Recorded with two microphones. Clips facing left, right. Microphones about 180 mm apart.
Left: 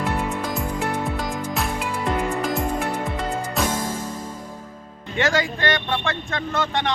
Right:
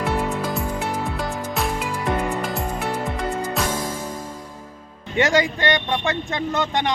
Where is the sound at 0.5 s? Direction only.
Centre (ahead or behind).